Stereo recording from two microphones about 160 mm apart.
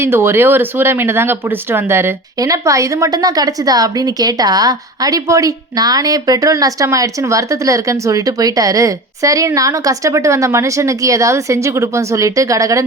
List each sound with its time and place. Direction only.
0.0 s speech: 15° right (ahead or behind)